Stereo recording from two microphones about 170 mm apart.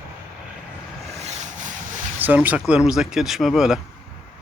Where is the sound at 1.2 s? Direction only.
40° right (ahead or behind).